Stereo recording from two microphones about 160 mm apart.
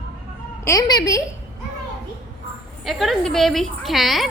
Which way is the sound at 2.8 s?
Centre (ahead or behind).